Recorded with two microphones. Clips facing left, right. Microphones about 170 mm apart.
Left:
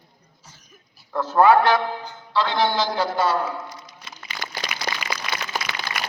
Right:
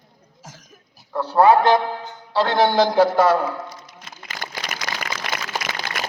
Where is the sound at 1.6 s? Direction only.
25° right (ahead or behind).